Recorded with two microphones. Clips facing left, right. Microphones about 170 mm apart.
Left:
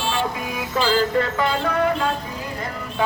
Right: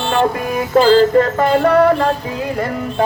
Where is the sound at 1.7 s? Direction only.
70° right (ahead or behind).